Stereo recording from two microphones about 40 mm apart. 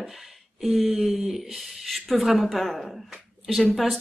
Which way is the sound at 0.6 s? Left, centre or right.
Centre.